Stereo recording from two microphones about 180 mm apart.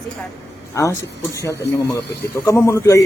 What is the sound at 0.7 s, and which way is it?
A man's voice, 15° left (ahead or behind).